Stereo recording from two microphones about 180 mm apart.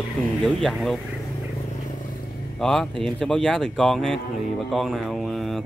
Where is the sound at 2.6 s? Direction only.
Centre (ahead or behind).